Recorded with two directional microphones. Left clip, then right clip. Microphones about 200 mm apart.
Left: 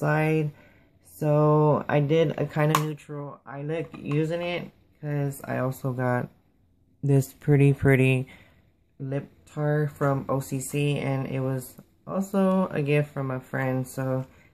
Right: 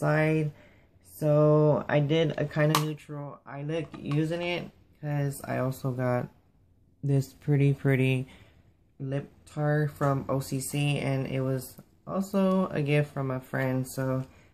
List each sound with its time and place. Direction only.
0.0 s speech: 25° left (ahead or behind)
2.9 s speech: 10° left (ahead or behind)